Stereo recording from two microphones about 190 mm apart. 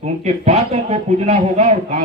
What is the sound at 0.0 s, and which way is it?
A man's voice, 35° right (ahead or behind).